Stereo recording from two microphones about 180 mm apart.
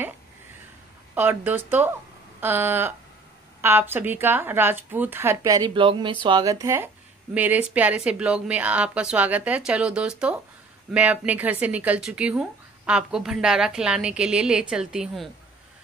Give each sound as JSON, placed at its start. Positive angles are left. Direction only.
{"t": 1.1, "sound": "a woman's voice", "side_deg": -10}